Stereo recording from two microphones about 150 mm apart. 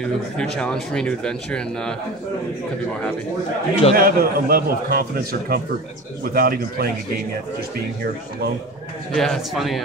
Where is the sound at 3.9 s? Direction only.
85° right.